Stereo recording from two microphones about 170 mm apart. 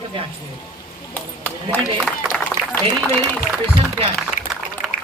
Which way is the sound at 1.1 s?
10° left (ahead or behind).